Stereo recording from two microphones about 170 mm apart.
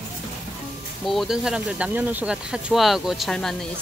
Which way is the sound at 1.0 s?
Centre (ahead or behind).